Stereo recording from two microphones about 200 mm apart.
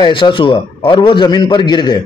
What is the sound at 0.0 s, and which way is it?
A man's voice, 25° left (ahead or behind).